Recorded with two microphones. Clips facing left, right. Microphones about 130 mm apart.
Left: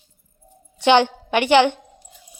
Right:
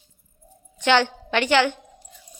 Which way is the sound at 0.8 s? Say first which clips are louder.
Left 4 dB; 15° left (ahead or behind).